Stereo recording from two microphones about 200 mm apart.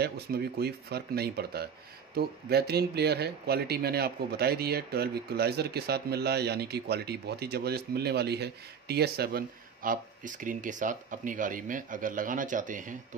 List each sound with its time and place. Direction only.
0.0 s speech: 50° right (ahead or behind)